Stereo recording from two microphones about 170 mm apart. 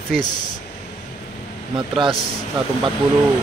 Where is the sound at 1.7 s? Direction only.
30° right (ahead or behind).